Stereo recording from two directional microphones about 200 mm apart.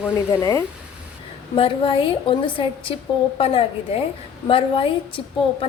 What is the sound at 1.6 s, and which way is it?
Speech, 25° left (ahead or behind).